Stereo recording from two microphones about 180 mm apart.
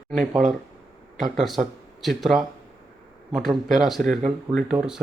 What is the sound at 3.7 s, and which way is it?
Speech, centre (ahead or behind).